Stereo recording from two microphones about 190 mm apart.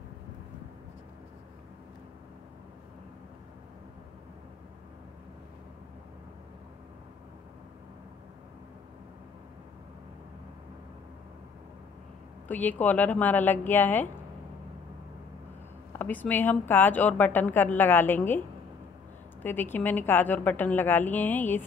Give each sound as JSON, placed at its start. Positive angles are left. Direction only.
{"t": 12.4, "sound": "a woman's voice", "side_deg": 10}
{"t": 15.9, "sound": "a woman's voice", "side_deg": 10}
{"t": 19.4, "sound": "a woman's voice", "side_deg": 10}